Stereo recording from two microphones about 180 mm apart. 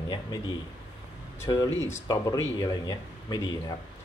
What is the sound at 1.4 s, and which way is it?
Speech, 20° left (ahead or behind).